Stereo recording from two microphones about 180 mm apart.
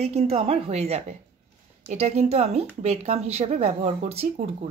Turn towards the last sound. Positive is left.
turn(degrees=-35)  # may be behind; listen again after turning